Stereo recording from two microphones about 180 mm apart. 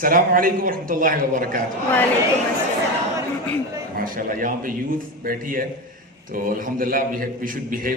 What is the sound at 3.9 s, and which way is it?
A man's voice, 50° right (ahead or behind).